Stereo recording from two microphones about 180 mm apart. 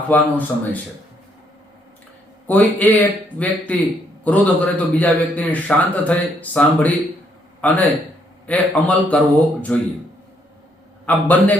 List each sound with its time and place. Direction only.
0.1 s a man's voice: 10° left (ahead or behind)
2.5 s a man's voice: 10° left (ahead or behind)
11.0 s a man's voice: 10° left (ahead or behind)